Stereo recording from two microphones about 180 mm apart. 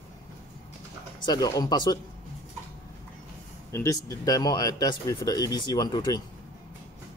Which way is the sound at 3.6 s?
15° left (ahead or behind).